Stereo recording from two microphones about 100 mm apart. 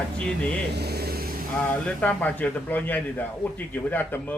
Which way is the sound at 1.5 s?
15° left (ahead or behind).